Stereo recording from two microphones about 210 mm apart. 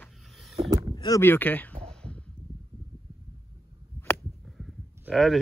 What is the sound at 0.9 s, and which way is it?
Speech, 15° left (ahead or behind).